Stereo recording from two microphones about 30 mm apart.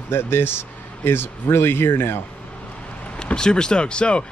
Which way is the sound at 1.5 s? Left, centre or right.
Left.